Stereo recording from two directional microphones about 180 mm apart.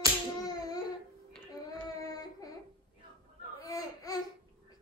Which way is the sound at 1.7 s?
20° left (ahead or behind).